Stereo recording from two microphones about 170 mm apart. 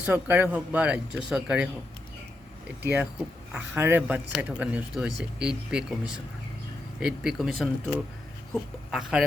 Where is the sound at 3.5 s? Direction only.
10° right (ahead or behind).